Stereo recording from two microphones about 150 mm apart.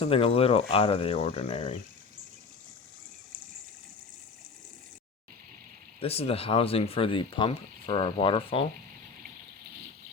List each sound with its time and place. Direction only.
0.0 s speech: 40° left (ahead or behind)
6.0 s speech: 40° left (ahead or behind)